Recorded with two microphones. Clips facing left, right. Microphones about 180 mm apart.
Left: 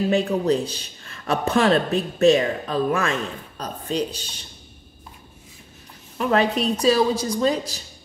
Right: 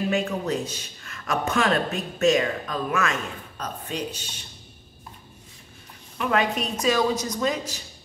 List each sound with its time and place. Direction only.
0.1 s a man's voice: 35° left (ahead or behind)
6.1 s a man's voice: 35° left (ahead or behind)